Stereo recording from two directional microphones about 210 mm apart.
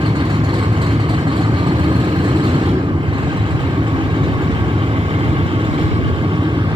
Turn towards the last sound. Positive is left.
turn(degrees=-20)  # may be behind; listen again after turning